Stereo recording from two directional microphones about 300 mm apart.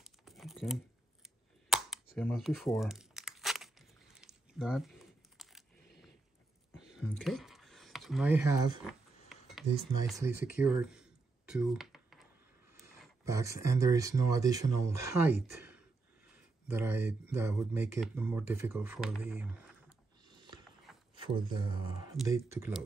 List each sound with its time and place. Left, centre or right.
0.0 s typing: centre
2.1 s tearing: centre
6.8 s a sound: centre
12.7 s speech: centre
16.6 s speech: centre
21.1 s a sound: centre
22.1 s speech: centre